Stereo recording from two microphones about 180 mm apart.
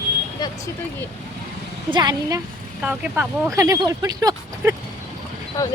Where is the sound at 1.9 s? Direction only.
25° right (ahead or behind).